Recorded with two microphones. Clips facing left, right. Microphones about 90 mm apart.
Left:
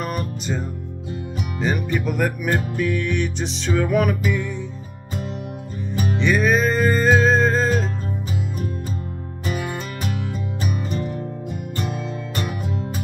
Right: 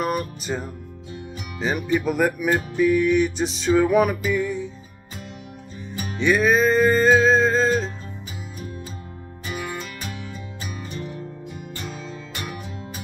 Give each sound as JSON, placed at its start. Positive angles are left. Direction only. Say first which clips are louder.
{"t": 0.0, "sound": "music", "louder": "right 2 dB", "side_deg": -5}
{"t": 6.2, "sound": "music", "louder": "right 2 dB", "side_deg": 0}
{"t": 9.5, "sound": "music", "louder": "left 3 dB", "side_deg": 50}